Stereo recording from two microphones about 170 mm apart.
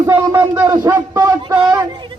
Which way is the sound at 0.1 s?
15° right (ahead or behind).